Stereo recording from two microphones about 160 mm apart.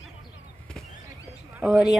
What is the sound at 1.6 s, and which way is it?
Speech, 5° right (ahead or behind).